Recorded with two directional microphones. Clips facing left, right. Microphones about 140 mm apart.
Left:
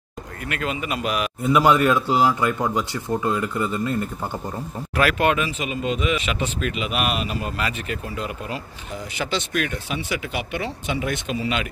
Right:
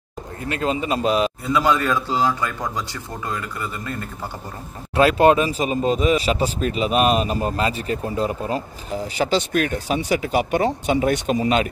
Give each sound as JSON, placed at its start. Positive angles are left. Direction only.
{"t": 0.5, "sound": "a man's voice", "side_deg": -30}
{"t": 1.4, "sound": "speech", "side_deg": 15}
{"t": 4.9, "sound": "speech", "side_deg": -30}